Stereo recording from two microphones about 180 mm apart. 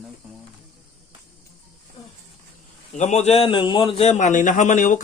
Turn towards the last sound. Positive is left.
turn(degrees=45)  # may be behind; listen again after turning